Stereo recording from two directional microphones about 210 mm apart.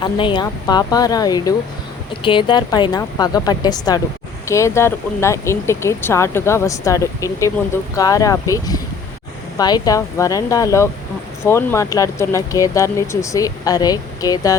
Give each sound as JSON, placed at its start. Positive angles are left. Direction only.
{"t": 0.0, "sound": "speech", "side_deg": 20}